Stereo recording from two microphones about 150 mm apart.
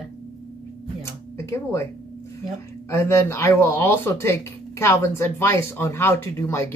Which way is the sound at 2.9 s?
15° left (ahead or behind).